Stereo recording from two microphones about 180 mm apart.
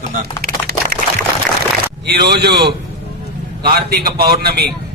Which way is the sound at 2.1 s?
65° right (ahead or behind).